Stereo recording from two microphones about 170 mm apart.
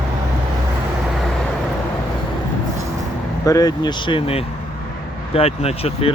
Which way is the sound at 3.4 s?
20° left (ahead or behind).